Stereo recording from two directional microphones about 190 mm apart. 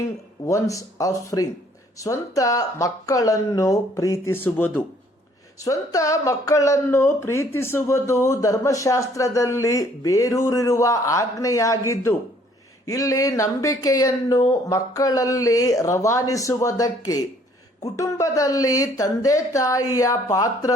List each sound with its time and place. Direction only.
0.4 s speech: 15° left (ahead or behind)